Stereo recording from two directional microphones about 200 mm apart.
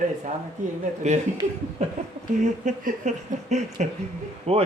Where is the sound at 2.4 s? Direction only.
35° right (ahead or behind).